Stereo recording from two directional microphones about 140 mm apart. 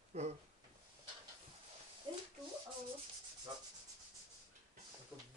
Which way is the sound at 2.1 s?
35° right (ahead or behind).